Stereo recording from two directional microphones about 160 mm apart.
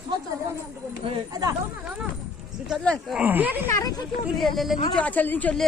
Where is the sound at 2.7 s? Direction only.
5° left (ahead or behind).